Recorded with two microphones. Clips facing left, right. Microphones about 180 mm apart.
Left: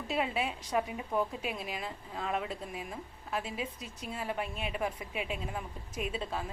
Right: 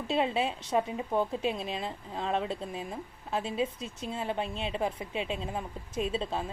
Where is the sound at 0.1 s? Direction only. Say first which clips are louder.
Right 4 dB; 25° right (ahead or behind).